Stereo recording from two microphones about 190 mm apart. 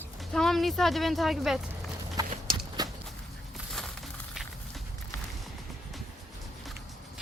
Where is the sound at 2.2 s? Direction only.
20° right (ahead or behind).